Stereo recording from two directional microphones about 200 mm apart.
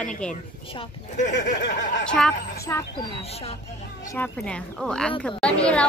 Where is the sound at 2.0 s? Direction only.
5° left (ahead or behind).